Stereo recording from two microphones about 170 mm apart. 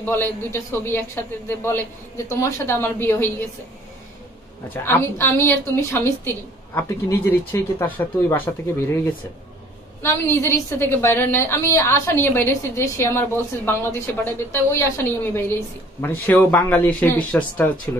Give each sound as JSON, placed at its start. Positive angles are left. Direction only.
{"t": 0.0, "sound": "a woman's voice", "side_deg": 10}
{"t": 4.8, "sound": "a woman's voice", "side_deg": 15}
{"t": 16.0, "sound": "a woman's voice", "side_deg": 10}